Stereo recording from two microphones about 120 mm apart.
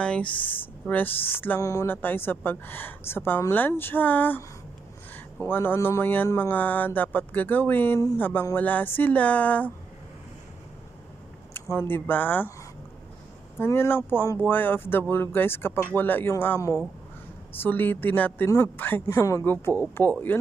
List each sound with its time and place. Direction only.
0.0 s speech: 10° left (ahead or behind)
11.5 s speech: 20° left (ahead or behind)
13.6 s speech: 20° left (ahead or behind)